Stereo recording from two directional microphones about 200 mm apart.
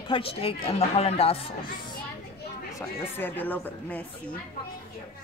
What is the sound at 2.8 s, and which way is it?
Speech, 10° left (ahead or behind).